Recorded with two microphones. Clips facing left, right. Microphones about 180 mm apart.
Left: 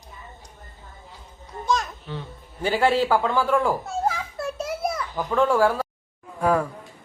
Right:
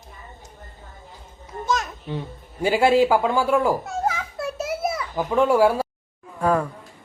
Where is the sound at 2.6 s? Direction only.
10° right (ahead or behind).